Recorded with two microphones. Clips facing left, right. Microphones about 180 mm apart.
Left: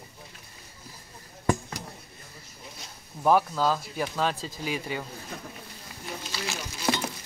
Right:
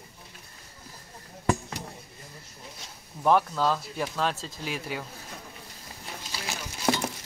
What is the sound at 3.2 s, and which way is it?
Speech, 5° left (ahead or behind).